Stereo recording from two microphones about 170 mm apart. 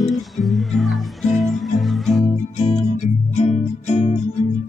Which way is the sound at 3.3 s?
40° left (ahead or behind).